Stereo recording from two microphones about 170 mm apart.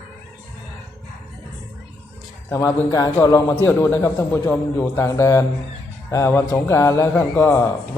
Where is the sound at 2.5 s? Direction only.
20° left (ahead or behind).